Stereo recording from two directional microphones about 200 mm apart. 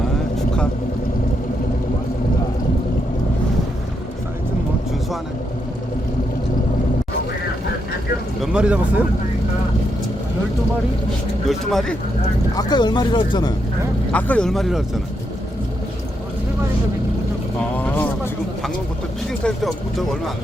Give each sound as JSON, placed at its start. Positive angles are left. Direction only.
{"t": 8.4, "sound": "a sound", "side_deg": -5}
{"t": 11.4, "sound": "speech", "side_deg": 0}
{"t": 12.5, "sound": "speech", "side_deg": 20}
{"t": 14.1, "sound": "speech", "side_deg": 5}
{"t": 17.6, "sound": "vehicle", "side_deg": 10}
{"t": 19.3, "sound": "speech", "side_deg": 5}